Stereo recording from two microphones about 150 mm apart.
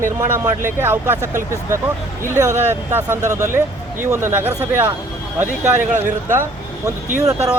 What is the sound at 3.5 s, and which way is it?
Speech, 15° right (ahead or behind).